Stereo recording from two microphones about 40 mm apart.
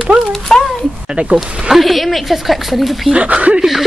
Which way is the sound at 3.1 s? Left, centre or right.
Right.